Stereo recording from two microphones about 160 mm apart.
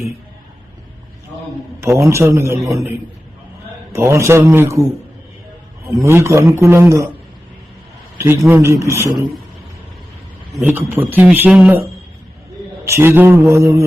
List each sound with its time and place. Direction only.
1.8 s a man's voice: 15° right (ahead or behind)
3.9 s a man's voice: 15° right (ahead or behind)
6.0 s a man's voice: 15° right (ahead or behind)
8.2 s a man's voice: 15° right (ahead or behind)
10.6 s a man's voice: 10° right (ahead or behind)
12.8 s a man's voice: 15° right (ahead or behind)